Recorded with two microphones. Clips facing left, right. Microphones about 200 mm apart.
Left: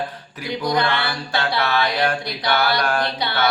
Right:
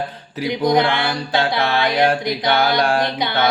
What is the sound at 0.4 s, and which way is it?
Music, 20° right (ahead or behind).